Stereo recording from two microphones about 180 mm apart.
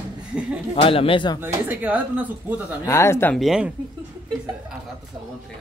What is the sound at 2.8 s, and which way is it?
Speech, 15° left (ahead or behind).